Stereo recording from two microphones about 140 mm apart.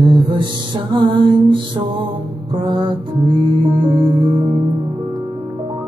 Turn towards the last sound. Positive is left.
turn(degrees=-25)  # may be behind; listen again after turning